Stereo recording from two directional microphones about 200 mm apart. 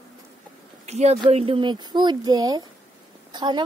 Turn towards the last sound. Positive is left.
turn(degrees=-20)  # may be behind; listen again after turning